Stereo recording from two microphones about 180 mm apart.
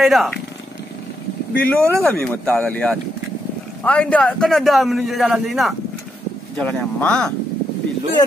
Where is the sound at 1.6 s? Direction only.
10° left (ahead or behind).